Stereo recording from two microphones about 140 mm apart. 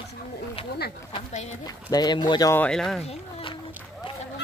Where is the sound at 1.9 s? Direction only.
30° left (ahead or behind).